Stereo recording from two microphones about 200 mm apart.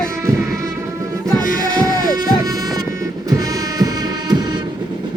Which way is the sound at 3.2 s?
15° right (ahead or behind).